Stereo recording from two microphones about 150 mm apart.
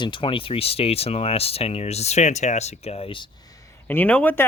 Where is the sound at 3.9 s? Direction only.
10° left (ahead or behind).